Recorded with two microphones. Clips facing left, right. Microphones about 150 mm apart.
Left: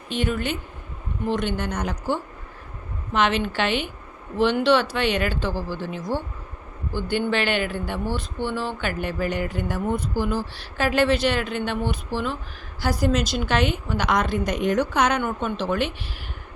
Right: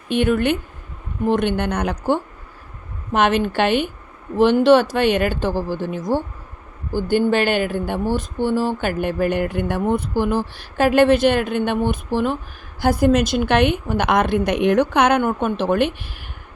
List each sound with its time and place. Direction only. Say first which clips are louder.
0.1 s a woman's voice: right 8 dB; 55° right (ahead or behind)